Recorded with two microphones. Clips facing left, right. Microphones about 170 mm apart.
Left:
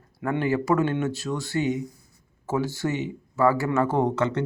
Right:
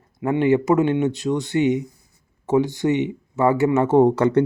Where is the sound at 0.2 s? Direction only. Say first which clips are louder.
Right 7 dB; 20° right (ahead or behind).